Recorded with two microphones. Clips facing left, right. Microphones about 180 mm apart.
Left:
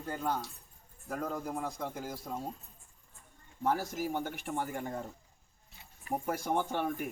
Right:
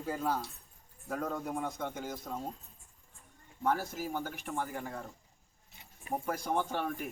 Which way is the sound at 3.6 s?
15° left (ahead or behind).